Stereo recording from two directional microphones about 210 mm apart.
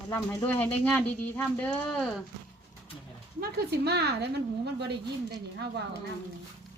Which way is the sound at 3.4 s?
50° right (ahead or behind).